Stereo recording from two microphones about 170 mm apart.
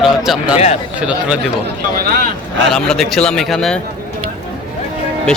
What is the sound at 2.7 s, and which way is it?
Speech, 5° left (ahead or behind).